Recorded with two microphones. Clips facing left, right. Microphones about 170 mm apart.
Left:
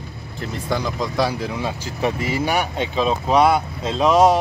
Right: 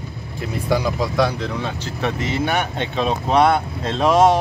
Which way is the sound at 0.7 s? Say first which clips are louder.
Right 4 dB; 5° right (ahead or behind).